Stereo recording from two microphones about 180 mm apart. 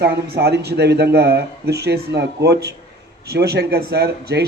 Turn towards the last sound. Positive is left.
turn(degrees=-65)  # may be behind; listen again after turning